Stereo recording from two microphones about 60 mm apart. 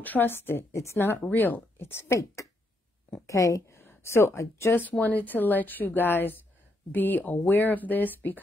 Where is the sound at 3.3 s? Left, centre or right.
Left.